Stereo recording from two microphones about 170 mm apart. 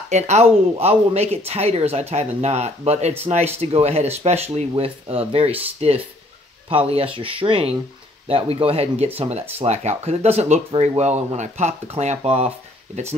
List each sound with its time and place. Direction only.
0.1 s speech: 40° right (ahead or behind)